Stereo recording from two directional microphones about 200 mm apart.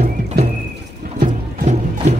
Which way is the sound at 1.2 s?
40° right (ahead or behind).